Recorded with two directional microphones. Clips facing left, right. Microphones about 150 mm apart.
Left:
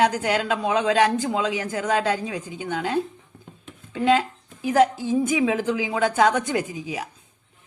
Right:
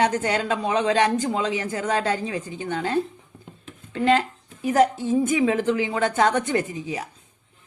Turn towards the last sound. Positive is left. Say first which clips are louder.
# right 1 dB
turn(degrees=5)  # may be behind; listen again after turning